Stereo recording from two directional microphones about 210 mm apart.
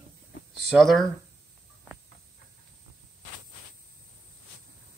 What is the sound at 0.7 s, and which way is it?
Speech, centre (ahead or behind).